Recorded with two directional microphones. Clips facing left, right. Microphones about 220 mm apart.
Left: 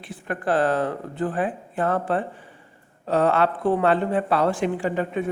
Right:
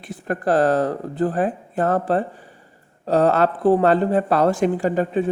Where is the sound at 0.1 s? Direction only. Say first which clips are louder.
Right 4 dB; 40° right (ahead or behind).